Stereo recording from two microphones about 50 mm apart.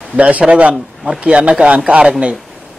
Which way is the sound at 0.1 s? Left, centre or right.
Right.